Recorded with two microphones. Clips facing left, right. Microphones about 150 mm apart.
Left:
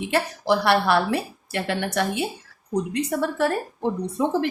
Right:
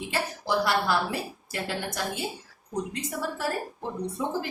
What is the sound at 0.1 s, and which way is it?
A woman's voice, 70° left (ahead or behind).